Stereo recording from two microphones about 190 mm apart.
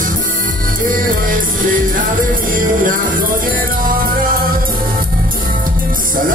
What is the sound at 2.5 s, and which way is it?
Music, 45° right (ahead or behind).